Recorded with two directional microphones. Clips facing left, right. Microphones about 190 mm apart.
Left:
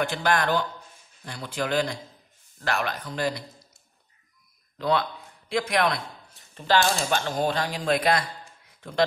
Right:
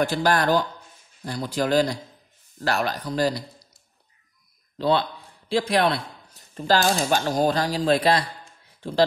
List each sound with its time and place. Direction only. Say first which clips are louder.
0.0 s speech: right 3 dB; 35° right (ahead or behind)
4.7 s a man's voice: right 3 dB; 30° right (ahead or behind)